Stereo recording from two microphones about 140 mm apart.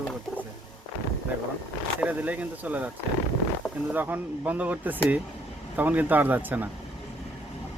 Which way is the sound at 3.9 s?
15° right (ahead or behind).